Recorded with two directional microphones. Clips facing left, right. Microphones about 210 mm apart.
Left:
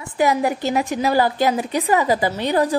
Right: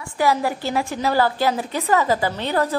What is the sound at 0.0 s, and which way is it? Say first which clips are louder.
A woman's voice: left 2 dB; 20° left (ahead or behind).